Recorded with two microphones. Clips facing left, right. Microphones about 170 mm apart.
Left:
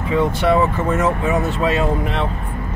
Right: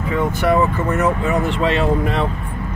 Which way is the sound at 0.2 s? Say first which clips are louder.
Even; 25° left (ahead or behind).